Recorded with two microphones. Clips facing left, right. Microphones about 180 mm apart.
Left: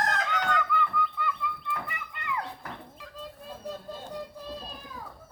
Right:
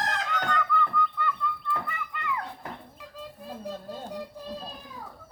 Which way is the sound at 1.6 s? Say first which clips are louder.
Right 3 dB; 20° left (ahead or behind).